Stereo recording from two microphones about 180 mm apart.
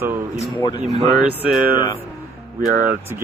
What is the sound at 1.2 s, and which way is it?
Speech, 5° right (ahead or behind).